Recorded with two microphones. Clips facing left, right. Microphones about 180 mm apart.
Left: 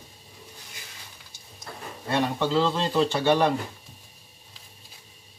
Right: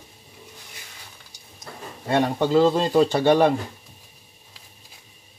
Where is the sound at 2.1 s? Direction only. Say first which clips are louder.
Right 5 dB; 45° right (ahead or behind).